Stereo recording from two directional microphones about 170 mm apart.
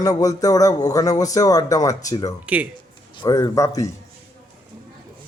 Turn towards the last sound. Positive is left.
turn(degrees=20)  # may be behind; listen again after turning